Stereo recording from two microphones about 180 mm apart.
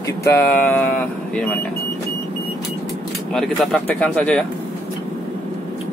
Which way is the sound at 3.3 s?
Centre (ahead or behind).